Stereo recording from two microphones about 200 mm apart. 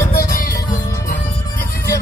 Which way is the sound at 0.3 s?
45° left (ahead or behind).